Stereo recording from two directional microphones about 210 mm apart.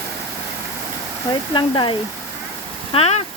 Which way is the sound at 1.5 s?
20° left (ahead or behind).